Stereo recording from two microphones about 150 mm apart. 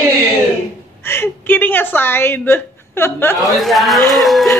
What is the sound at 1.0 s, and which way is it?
A woman's voice, 15° left (ahead or behind).